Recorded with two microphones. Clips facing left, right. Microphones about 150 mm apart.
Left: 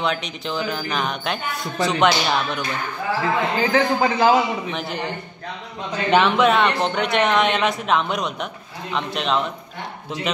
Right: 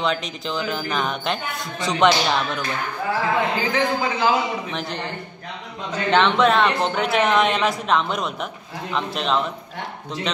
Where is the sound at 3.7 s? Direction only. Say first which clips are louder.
Left 3 dB; 50° left (ahead or behind).